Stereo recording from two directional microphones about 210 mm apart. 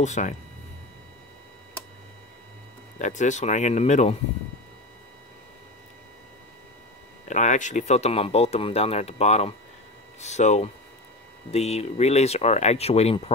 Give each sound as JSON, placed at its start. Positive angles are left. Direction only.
{"t": 0.0, "sound": "speech", "side_deg": 35}
{"t": 3.0, "sound": "speech", "side_deg": 35}
{"t": 7.2, "sound": "speech", "side_deg": 35}